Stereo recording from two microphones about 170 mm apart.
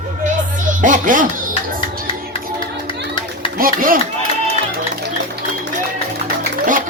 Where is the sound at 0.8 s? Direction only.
50° right (ahead or behind).